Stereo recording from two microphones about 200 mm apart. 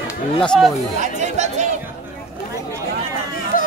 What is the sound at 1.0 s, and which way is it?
Speech, 35° right (ahead or behind).